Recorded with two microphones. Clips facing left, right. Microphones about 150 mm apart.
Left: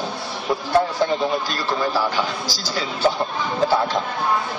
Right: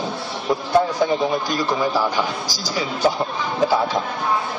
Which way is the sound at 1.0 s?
15° right (ahead or behind).